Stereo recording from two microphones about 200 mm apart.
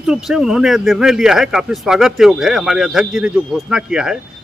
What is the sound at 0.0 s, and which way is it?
Speech, 5° right (ahead or behind).